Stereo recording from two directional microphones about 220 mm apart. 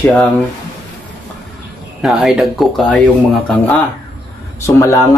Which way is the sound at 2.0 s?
Centre (ahead or behind).